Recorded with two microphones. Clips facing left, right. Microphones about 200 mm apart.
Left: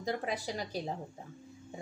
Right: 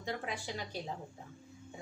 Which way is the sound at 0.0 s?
40° left (ahead or behind).